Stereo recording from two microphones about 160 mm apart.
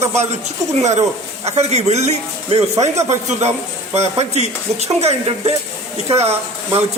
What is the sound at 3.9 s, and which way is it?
Speech, 40° right (ahead or behind).